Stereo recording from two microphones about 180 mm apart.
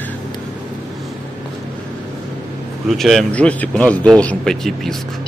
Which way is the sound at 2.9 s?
Centre (ahead or behind).